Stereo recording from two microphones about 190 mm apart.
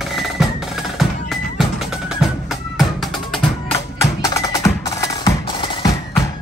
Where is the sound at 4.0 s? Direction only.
15° left (ahead or behind).